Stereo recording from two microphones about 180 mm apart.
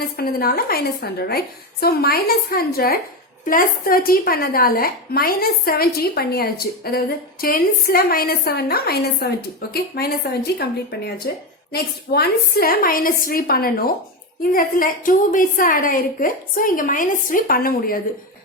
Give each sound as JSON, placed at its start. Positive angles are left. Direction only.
{"t": 0.2, "sound": "a woman's voice", "side_deg": 55}